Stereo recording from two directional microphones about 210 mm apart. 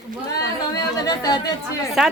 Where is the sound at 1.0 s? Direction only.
20° left (ahead or behind).